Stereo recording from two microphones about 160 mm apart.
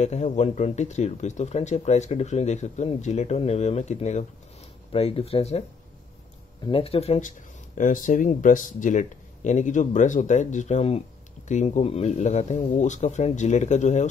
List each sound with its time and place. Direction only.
0.0 s speech: 45° left (ahead or behind)
6.6 s speech: 35° left (ahead or behind)